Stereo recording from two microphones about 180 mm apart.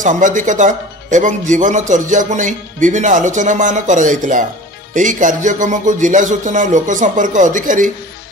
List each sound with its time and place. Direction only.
0.0 s speech: 45° right (ahead or behind)